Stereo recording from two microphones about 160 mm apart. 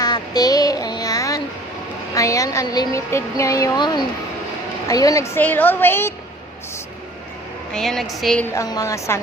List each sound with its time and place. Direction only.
0.0 s child singing: 25° left (ahead or behind)
2.1 s a woman's voice: 20° left (ahead or behind)
7.7 s a woman's voice: centre (ahead or behind)
8.5 s a woman's voice: 20° left (ahead or behind)